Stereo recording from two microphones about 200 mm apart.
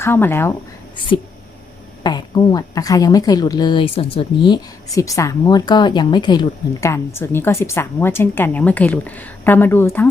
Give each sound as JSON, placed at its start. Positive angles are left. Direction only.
{"t": 0.0, "sound": "speech", "side_deg": 10}
{"t": 2.0, "sound": "speech", "side_deg": 20}